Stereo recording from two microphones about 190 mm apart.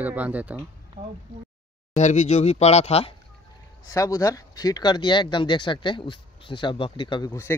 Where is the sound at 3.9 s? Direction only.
15° left (ahead or behind).